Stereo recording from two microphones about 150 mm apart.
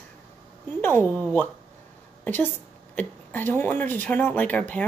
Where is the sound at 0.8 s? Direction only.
15° left (ahead or behind).